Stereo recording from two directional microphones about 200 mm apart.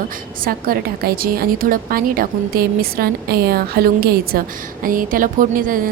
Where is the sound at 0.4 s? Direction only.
45° right (ahead or behind).